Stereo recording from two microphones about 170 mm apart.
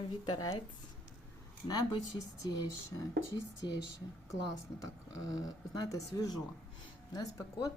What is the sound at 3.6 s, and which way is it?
Speech, 90° left.